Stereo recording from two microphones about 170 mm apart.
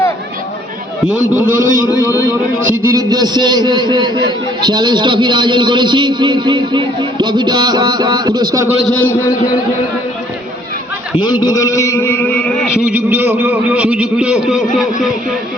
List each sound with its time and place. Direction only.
1.5 s a man's voice: 50° right (ahead or behind)
2.8 s a man's voice: 20° right (ahead or behind)
8.8 s a man's voice: 10° left (ahead or behind)
11.3 s a man's voice: 25° left (ahead or behind)
12.8 s a man's voice: 10° right (ahead or behind)